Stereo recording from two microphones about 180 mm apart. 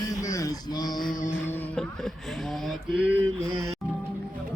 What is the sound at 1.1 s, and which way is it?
Music, 50° left (ahead or behind).